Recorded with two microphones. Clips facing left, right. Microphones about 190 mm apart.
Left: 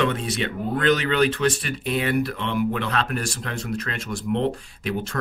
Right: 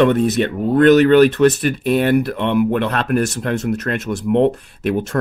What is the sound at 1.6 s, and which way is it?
Speech, 60° right (ahead or behind).